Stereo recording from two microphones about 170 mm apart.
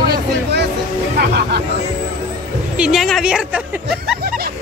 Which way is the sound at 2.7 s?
5° right (ahead or behind).